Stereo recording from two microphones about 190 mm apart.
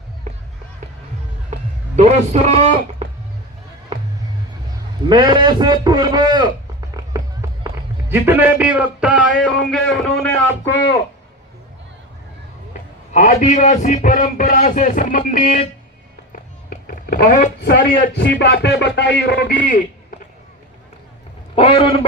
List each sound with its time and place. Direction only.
2.0 s a man's voice: 35° right (ahead or behind)
5.0 s a man's voice: 25° right (ahead or behind)
7.0 s run: 20° right (ahead or behind)
8.1 s a man's voice: 10° right (ahead or behind); by 10.7 s 5° left (ahead or behind)
13.1 s a man's voice: 40° left (ahead or behind)
16.3 s a sound: 45° left (ahead or behind)
18.2 s speech: 65° left (ahead or behind); by 19.8 s 45° left (ahead or behind)
21.5 s a man's voice: 30° left (ahead or behind)